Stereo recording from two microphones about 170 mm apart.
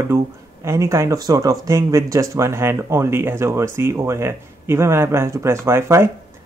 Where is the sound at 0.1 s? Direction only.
15° right (ahead or behind).